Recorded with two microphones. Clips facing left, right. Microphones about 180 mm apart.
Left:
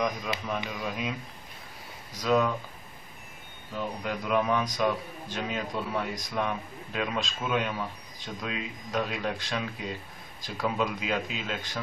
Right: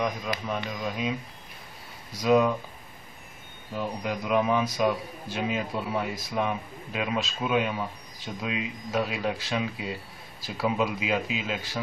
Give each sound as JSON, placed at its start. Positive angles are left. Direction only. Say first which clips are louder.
{"t": 0.3, "sound": "speech", "louder": "right 1 dB", "side_deg": 25}
{"t": 0.7, "sound": "a man's voice", "louder": "right 3 dB", "side_deg": 5}
{"t": 2.1, "sound": "speech", "louder": "right 4 dB", "side_deg": -10}
{"t": 3.7, "sound": "a man's voice", "louder": "right 2 dB", "side_deg": -5}